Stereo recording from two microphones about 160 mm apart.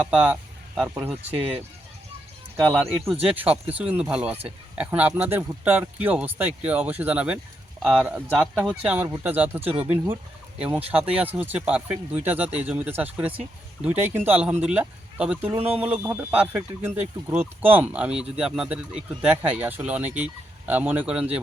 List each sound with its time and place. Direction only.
0.0 s speech: 5° right (ahead or behind)
1.4 s speech: 35° right (ahead or behind)
3.2 s speech: 10° right (ahead or behind)
15.5 s speech: 35° right (ahead or behind)
15.8 s speech: 10° right (ahead or behind)